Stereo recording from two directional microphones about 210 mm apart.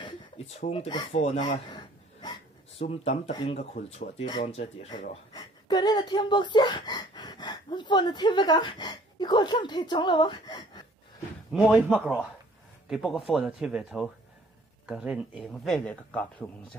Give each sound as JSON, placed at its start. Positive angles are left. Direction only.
{"t": 0.0, "sound": "speech", "side_deg": 30}
{"t": 11.5, "sound": "a man's voice", "side_deg": 0}